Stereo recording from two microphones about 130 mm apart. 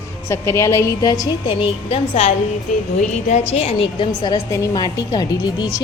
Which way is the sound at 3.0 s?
65° left (ahead or behind).